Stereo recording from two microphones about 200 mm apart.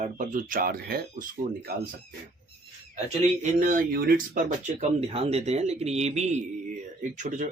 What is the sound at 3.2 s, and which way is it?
Speech, 40° right (ahead or behind).